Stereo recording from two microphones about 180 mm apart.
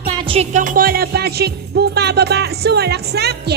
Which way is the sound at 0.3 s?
40° right (ahead or behind).